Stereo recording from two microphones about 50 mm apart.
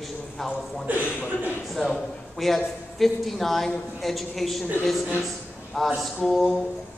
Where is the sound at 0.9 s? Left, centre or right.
Right.